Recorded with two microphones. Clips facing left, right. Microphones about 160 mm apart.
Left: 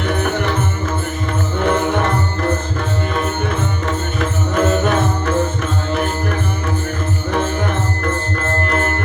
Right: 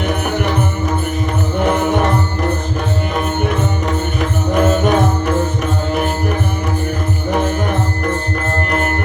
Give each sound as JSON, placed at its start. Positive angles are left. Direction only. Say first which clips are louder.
{"t": 1.6, "sound": "music", "louder": "right 1 dB", "side_deg": -15}
{"t": 4.5, "sound": "music", "louder": "right 2 dB", "side_deg": -15}